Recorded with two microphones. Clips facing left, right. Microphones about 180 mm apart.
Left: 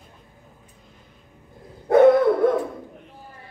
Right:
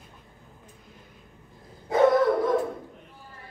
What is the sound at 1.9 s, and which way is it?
Dog, 60° left (ahead or behind).